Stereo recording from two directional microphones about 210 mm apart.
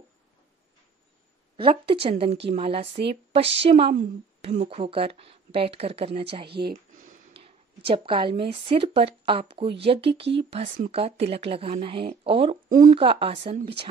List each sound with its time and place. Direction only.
1.6 s a woman's voice: 25° right (ahead or behind)
7.3 s a woman's voice: 25° right (ahead or behind)
12.6 s speech: 40° right (ahead or behind)
12.9 s a woman's voice: 25° right (ahead or behind)